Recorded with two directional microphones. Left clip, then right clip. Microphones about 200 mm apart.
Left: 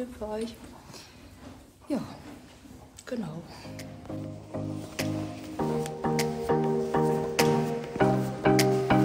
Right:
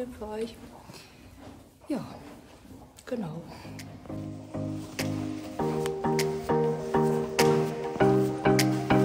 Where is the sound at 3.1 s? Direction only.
20° right (ahead or behind).